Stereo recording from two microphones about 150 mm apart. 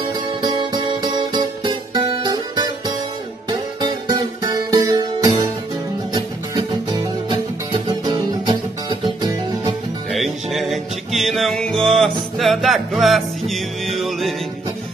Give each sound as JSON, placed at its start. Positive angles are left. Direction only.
{"t": 0.4, "sound": "music", "side_deg": -30}
{"t": 10.1, "sound": "music", "side_deg": 0}